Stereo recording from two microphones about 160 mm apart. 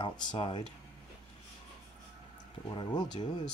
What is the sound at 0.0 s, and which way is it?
Speech, 30° left (ahead or behind).